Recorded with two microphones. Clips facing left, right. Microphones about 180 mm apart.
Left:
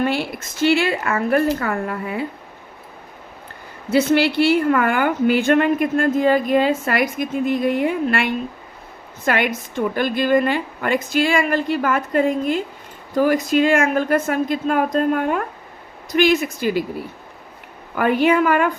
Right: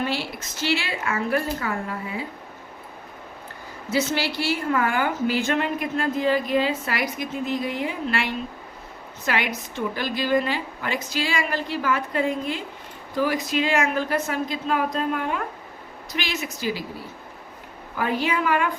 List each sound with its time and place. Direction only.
0.0 s a woman's voice: 55° left (ahead or behind)
3.8 s a woman's voice: 60° left (ahead or behind)
17.9 s a woman's voice: 60° left (ahead or behind)